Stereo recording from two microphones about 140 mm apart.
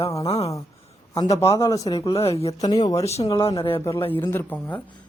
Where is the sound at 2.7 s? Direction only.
25° left (ahead or behind).